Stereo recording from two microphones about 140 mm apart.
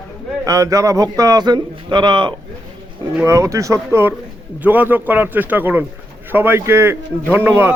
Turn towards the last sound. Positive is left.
turn(degrees=-15)  # may be behind; listen again after turning